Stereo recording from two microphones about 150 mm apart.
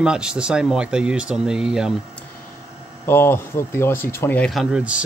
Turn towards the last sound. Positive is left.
turn(degrees=-10)  # may be behind; listen again after turning